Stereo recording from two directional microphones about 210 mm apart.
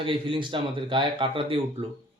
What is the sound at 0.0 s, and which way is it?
A man's voice, 25° right (ahead or behind).